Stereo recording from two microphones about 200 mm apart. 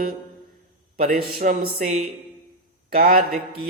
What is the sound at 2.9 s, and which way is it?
Speech, 45° right (ahead or behind).